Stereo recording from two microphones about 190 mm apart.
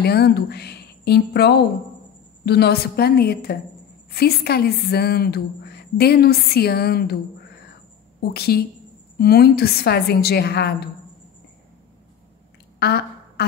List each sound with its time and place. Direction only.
0.0 s a woman's voice: 55° left (ahead or behind)
8.3 s a woman's voice: 55° left (ahead or behind)
12.7 s a sound: 55° left (ahead or behind)